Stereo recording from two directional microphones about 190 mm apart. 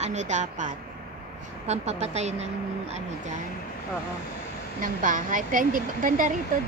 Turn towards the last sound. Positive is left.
turn(degrees=-45)  # may be behind; listen again after turning